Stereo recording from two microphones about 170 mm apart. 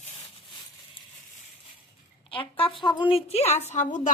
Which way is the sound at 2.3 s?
30° left (ahead or behind).